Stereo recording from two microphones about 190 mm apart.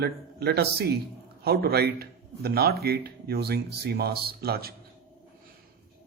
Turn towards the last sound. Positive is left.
turn(degrees=-55)  # may be behind; listen again after turning